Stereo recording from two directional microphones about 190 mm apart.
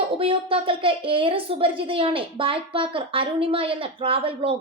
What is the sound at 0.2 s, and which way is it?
A woman's voice, 30° right (ahead or behind).